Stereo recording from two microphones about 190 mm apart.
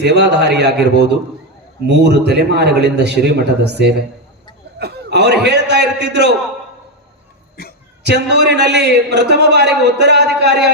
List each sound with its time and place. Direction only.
0.0 s a man's voice: 60° right (ahead or behind)
8.0 s a man's voice: 60° right (ahead or behind)